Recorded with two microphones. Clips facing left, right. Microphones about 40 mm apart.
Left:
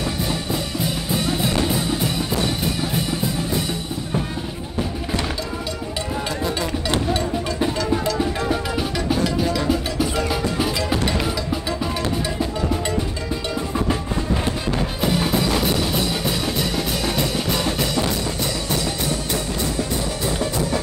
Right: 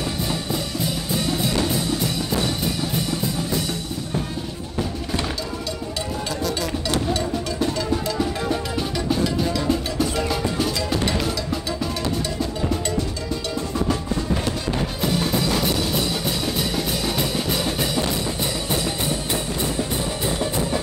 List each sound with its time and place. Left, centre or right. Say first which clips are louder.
1.1 s music: left 1 dB; centre
6.4 s music: left 1 dB; left
9.1 s music: left 1 dB; centre
15.0 s music: left 2 dB; centre
19.3 s music: left 1 dB; right